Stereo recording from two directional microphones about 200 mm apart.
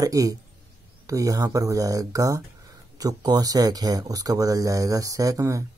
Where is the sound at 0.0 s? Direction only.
15° right (ahead or behind).